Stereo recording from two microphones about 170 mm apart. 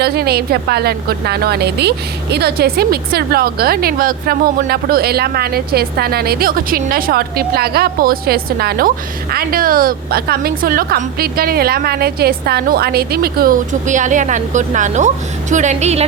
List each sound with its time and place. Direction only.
0.0 s a woman's voice: 70° right (ahead or behind); by 16.0 s 40° right (ahead or behind)